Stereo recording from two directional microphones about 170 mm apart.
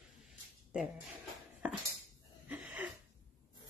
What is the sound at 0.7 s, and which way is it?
Speech, centre (ahead or behind).